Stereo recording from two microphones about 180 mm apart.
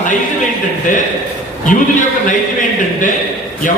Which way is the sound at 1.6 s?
45° left (ahead or behind).